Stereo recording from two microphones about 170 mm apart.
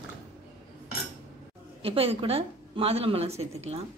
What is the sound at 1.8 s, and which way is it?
A woman's voice, 35° right (ahead or behind).